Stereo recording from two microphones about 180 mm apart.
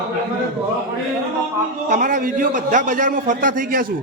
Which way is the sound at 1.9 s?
50° right (ahead or behind).